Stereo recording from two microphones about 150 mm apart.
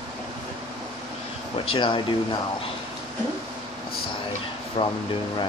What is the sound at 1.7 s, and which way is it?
Speech, 35° left (ahead or behind).